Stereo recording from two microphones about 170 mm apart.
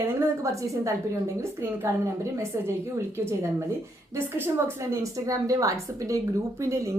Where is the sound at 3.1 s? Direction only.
15° right (ahead or behind).